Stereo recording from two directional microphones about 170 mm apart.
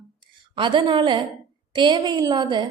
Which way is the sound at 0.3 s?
30° right (ahead or behind).